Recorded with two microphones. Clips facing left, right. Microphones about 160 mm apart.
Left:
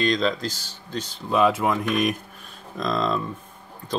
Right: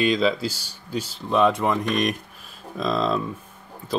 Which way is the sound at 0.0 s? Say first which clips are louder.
Right 2 dB; 5° right (ahead or behind).